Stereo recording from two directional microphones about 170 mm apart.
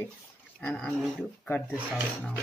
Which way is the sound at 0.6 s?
Centre (ahead or behind).